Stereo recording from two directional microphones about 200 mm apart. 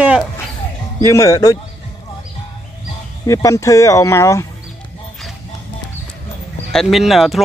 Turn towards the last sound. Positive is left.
turn(degrees=0)  # may be behind; listen again after turning